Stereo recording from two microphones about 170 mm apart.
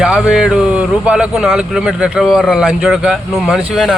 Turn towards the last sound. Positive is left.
turn(degrees=0)  # may be behind; listen again after turning